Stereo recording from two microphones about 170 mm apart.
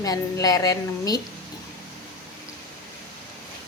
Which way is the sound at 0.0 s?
20° left (ahead or behind).